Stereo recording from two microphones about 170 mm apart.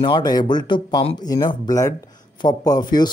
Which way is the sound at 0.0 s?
25° left (ahead or behind).